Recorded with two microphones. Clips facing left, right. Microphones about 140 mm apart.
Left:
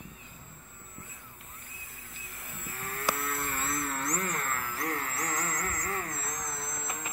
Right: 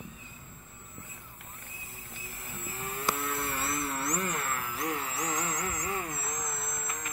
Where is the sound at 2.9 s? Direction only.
15° right (ahead or behind); by 7.1 s 5° left (ahead or behind).